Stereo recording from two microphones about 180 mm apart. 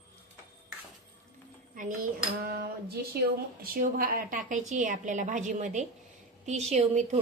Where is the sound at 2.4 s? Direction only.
60° right (ahead or behind).